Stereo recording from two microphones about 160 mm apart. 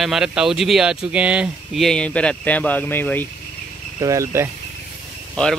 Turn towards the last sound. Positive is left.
turn(degrees=5)  # may be behind; listen again after turning